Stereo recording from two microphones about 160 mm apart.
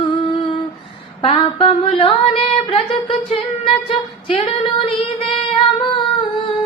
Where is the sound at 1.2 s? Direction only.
35° left (ahead or behind).